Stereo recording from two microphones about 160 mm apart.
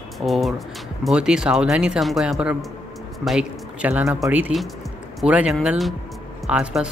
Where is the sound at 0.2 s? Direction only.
Centre (ahead or behind).